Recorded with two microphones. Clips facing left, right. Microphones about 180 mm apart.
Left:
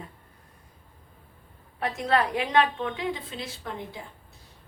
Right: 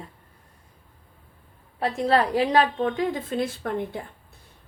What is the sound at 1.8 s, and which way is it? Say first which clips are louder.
A woman's voice: right 3 dB; 30° right (ahead or behind).